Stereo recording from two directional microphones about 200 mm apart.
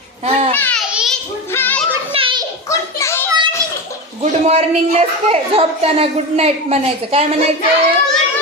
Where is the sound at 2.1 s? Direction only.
25° right (ahead or behind).